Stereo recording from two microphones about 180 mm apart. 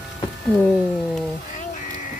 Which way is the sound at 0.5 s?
5° left (ahead or behind).